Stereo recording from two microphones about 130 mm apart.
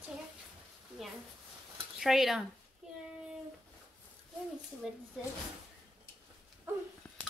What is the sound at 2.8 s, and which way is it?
Child singing, 5° right (ahead or behind).